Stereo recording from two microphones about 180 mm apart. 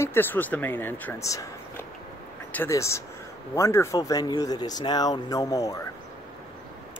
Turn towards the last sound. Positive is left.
turn(degrees=20)  # may be behind; listen again after turning